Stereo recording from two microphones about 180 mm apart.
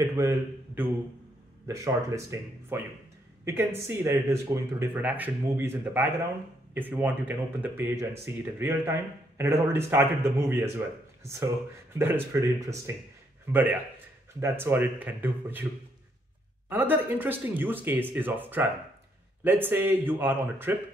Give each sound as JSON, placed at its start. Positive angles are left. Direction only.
{"t": 0.2, "sound": "a man's voice", "side_deg": -15}
{"t": 16.6, "sound": "speech", "side_deg": -10}